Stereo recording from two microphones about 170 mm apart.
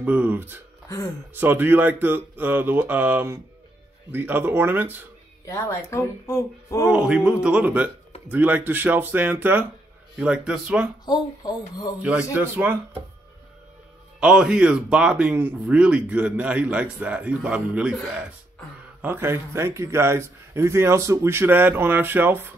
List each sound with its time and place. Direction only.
0.0 s speech: 10° right (ahead or behind)
5.4 s speech: 20° left (ahead or behind)
6.9 s a man's voice: 5° right (ahead or behind)
11.1 s speech: 25° left (ahead or behind)
12.0 s speech: 10° right (ahead or behind)
14.2 s speech: 5° right (ahead or behind)